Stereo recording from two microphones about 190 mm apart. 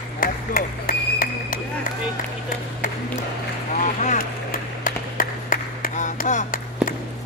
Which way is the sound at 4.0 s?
45° left (ahead or behind).